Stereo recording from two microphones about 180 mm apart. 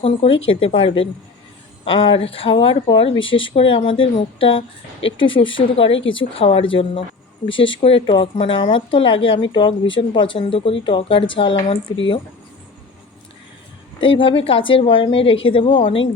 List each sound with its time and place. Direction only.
0.0 s speech: 30° left (ahead or behind)
3.1 s speech: 90° left
3.5 s speech: 30° left (ahead or behind)
4.9 s speech: 90° left
5.2 s speech: 30° left (ahead or behind)
14.2 s speech: 30° left (ahead or behind)